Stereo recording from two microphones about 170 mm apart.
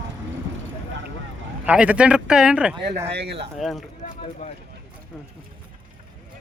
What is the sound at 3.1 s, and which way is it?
Speech, 75° right (ahead or behind).